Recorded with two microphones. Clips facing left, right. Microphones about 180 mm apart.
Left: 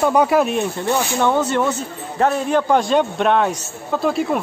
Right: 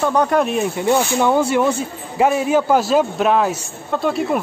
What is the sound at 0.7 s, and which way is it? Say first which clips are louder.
Speech: right 3 dB; 10° right (ahead or behind).